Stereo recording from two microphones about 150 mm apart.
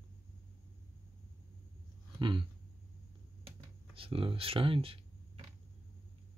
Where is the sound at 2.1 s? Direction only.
30° right (ahead or behind).